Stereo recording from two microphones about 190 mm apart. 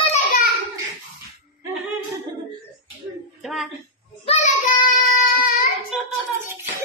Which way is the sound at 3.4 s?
Centre (ahead or behind).